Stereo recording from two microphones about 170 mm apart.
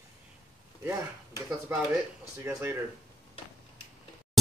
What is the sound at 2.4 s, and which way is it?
Speech, 15° right (ahead or behind).